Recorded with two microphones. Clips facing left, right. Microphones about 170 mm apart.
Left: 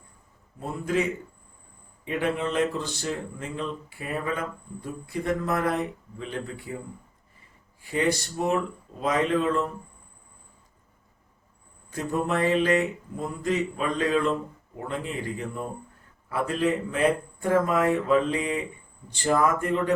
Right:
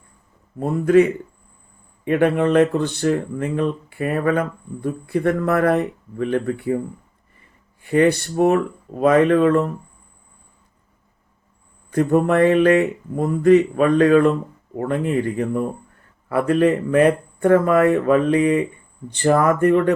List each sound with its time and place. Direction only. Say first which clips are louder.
0.6 s speech: right 12 dB; 60° right (ahead or behind)
7.8 s speech: right 9 dB; 60° right (ahead or behind)
11.9 s speech: right 10 dB; 60° right (ahead or behind)